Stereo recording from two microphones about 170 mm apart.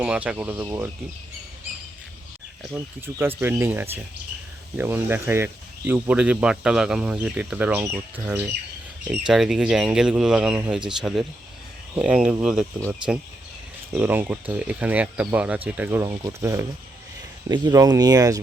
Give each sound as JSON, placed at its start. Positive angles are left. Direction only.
{"t": 0.0, "sound": "speech", "side_deg": -5}
{"t": 2.7, "sound": "speech", "side_deg": -10}
{"t": 13.9, "sound": "speech", "side_deg": -10}